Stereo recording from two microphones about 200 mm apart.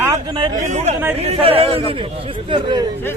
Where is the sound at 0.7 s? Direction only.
35° right (ahead or behind).